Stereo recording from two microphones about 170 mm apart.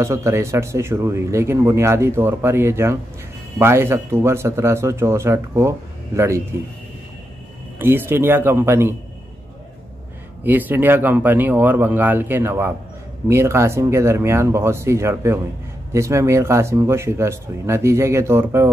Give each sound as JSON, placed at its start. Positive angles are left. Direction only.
{"t": 0.0, "sound": "speech", "side_deg": -15}
{"t": 7.8, "sound": "speech", "side_deg": -15}
{"t": 10.4, "sound": "speech", "side_deg": -10}